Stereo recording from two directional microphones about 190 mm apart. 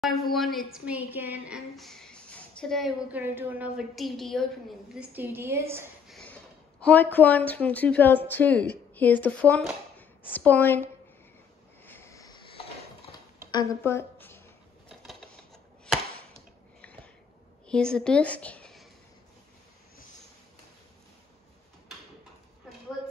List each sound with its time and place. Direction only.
0.0 s a woman's voice: centre (ahead or behind)
3.2 s a woman's voice: 10° right (ahead or behind)
6.0 s a woman's voice: 5° left (ahead or behind)
11.8 s a sound: 10° left (ahead or behind)
14.9 s typewriter: centre (ahead or behind)
16.8 s a sound: 5° left (ahead or behind)
17.6 s a woman's voice: 5° left (ahead or behind)